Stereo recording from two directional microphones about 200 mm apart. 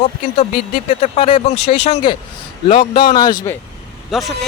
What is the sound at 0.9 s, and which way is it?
Speech, 30° left (ahead or behind).